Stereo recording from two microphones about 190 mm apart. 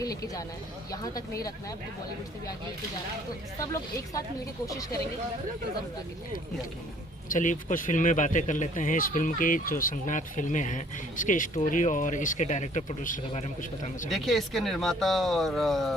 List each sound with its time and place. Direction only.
0.0 s speech: 20° left (ahead or behind)
3.6 s speech: 15° left (ahead or behind)
7.3 s speech: 45° left (ahead or behind)
14.1 s speech: centre (ahead or behind)